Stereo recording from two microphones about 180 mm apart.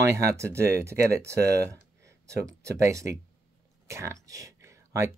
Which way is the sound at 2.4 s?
15° right (ahead or behind).